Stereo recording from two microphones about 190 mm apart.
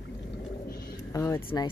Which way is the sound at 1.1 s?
15° left (ahead or behind).